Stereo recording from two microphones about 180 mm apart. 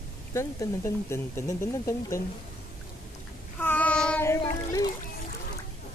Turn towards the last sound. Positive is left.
turn(degrees=20)  # may be behind; listen again after turning